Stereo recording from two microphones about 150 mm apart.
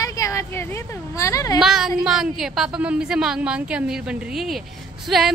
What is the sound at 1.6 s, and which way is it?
A woman's voice, 5° right (ahead or behind).